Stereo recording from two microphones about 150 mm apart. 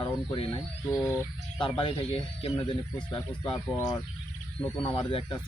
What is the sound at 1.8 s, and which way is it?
Speech, 40° left (ahead or behind).